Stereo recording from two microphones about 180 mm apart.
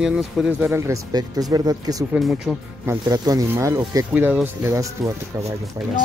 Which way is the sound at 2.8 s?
20° right (ahead or behind).